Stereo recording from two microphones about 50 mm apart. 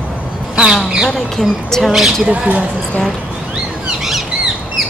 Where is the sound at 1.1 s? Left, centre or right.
Centre.